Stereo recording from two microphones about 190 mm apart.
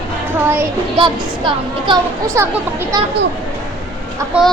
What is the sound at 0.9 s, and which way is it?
Speech, 25° right (ahead or behind).